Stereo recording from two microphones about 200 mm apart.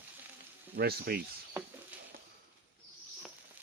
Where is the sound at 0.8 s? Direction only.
50° right (ahead or behind).